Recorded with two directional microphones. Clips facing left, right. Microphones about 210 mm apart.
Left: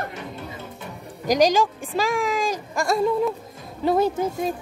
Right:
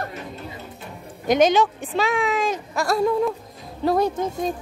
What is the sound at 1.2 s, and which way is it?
Speech, 40° left (ahead or behind).